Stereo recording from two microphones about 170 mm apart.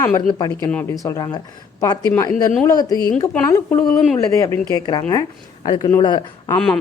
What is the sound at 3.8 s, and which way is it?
Speech, 5° left (ahead or behind).